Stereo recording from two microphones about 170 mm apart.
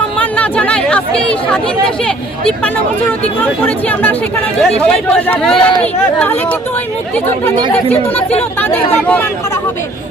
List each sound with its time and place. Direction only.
0.2 s chatter: 10° left (ahead or behind)
4.6 s speech: 5° left (ahead or behind)
8.1 s speech: 35° left (ahead or behind)
8.7 s speech: 10° left (ahead or behind)